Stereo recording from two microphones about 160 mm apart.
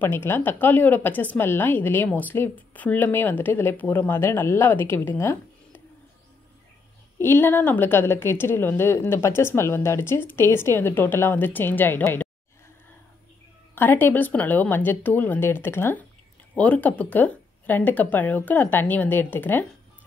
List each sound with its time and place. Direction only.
0.0 s a woman's voice: 15° left (ahead or behind)
7.2 s a woman's voice: 15° left (ahead or behind)
13.7 s a woman's voice: 10° left (ahead or behind)